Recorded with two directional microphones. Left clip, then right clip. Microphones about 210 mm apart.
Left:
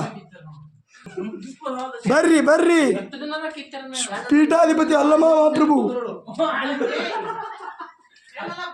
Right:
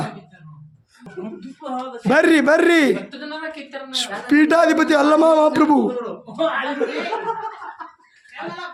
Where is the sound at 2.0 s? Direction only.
20° right (ahead or behind).